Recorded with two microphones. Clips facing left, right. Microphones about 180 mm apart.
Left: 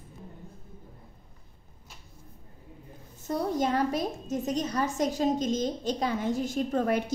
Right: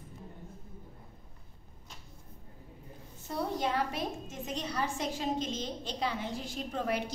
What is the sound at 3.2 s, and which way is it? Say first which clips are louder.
A woman's voice: left 5 dB; 45° left (ahead or behind).